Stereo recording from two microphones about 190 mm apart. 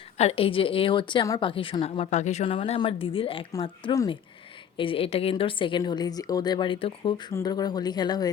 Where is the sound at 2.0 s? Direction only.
35° left (ahead or behind).